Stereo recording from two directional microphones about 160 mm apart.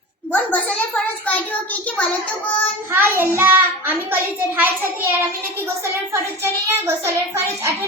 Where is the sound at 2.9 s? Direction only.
15° right (ahead or behind).